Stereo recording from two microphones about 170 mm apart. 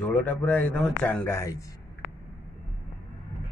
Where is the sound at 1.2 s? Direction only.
15° left (ahead or behind).